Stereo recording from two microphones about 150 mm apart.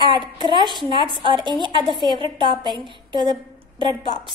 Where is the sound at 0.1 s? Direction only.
30° right (ahead or behind).